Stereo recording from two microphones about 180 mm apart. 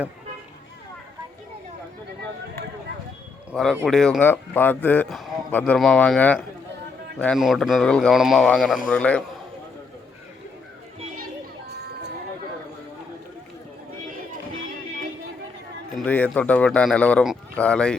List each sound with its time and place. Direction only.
3.5 s speech: centre (ahead or behind)
11.7 s a sound: 65° right (ahead or behind)
16.0 s speech: 10° left (ahead or behind)